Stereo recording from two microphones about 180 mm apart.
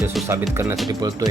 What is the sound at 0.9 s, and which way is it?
Speech, 20° right (ahead or behind).